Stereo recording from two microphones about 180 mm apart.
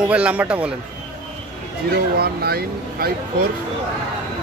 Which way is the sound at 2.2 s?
60° right (ahead or behind).